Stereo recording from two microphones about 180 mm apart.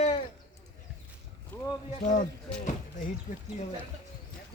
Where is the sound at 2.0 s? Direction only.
45° left (ahead or behind).